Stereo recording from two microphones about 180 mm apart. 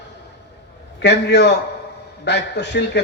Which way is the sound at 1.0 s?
70° left (ahead or behind).